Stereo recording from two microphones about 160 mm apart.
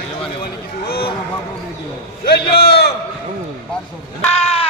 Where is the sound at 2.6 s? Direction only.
90° left.